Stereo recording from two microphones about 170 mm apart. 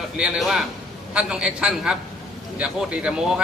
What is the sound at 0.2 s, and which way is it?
A man's voice, centre (ahead or behind).